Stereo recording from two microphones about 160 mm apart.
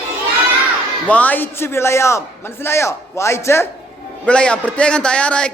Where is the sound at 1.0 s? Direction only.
10° left (ahead or behind).